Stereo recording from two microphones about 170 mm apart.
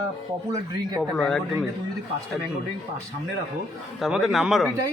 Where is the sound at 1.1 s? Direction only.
5° left (ahead or behind).